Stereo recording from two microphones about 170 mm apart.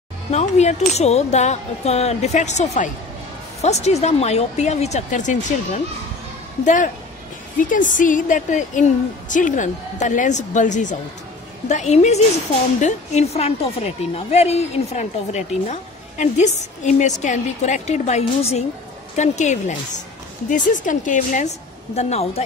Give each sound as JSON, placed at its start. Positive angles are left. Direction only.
{"t": 0.3, "sound": "a woman's voice", "side_deg": 40}
{"t": 21.9, "sound": "speech", "side_deg": 40}